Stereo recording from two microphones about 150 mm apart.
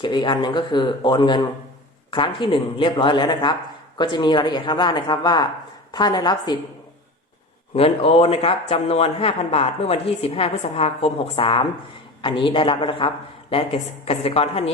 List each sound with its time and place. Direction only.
0.0 s a woman's voice: 30° left (ahead or behind)
7.8 s speech: 40° left (ahead or behind)